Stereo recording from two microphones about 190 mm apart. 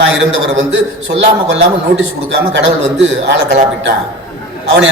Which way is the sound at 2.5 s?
70° right (ahead or behind).